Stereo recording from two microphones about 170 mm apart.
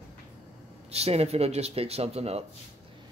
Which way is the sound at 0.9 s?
40° right (ahead or behind).